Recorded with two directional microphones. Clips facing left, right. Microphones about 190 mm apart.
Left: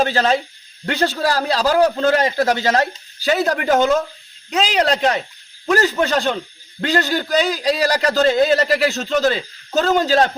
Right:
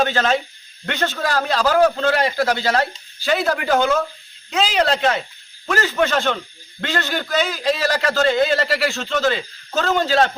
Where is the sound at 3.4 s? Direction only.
20° left (ahead or behind).